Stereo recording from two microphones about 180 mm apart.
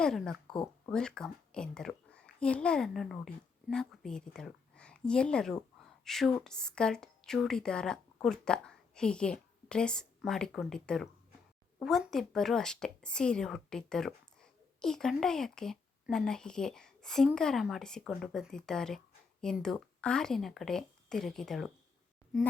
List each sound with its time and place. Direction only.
0.0 s a woman's voice: 5° left (ahead or behind)
5.8 s a sound: centre (ahead or behind)
6.3 s a woman's voice: 5° left (ahead or behind)